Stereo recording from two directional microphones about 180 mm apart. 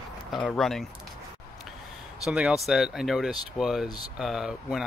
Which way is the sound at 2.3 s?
5° right (ahead or behind).